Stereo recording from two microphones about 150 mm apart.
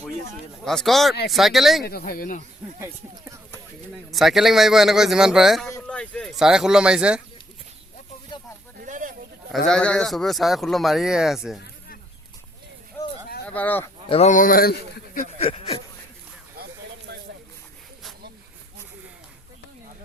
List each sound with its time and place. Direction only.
0.6 s speech: 5° left (ahead or behind)
1.8 s speech: 85° left; by 2.4 s 70° left (ahead or behind)
2.8 s speech: 20° right (ahead or behind)
4.1 s speech: centre (ahead or behind)
8.8 s a sound: 65° right (ahead or behind)
9.6 s speech: 5° left (ahead or behind)
13.0 s a sound: 15° left (ahead or behind)
13.5 s speech: 10° left (ahead or behind)
14.1 s a man's voice: 50° left (ahead or behind); by 15.3 s 75° left (ahead or behind)
15.4 s a sound: 40° left (ahead or behind)